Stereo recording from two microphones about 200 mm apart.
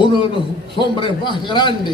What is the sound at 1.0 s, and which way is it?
Speech, 25° left (ahead or behind).